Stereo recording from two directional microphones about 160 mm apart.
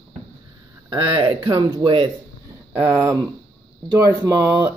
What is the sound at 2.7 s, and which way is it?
A man's voice, 15° right (ahead or behind).